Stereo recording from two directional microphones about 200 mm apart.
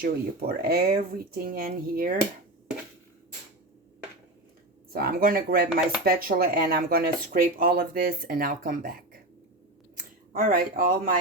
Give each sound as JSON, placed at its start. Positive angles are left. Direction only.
{"t": 0.0, "sound": "speech", "side_deg": -50}
{"t": 4.9, "sound": "speech", "side_deg": -50}
{"t": 10.3, "sound": "speech", "side_deg": -45}